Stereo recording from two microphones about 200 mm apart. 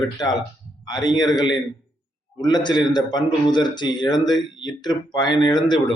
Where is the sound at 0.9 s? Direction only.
20° left (ahead or behind).